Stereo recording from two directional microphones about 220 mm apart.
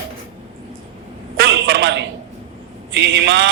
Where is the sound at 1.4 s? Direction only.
60° right (ahead or behind).